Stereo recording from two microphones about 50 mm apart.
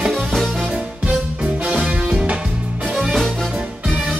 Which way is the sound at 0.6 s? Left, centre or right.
Right.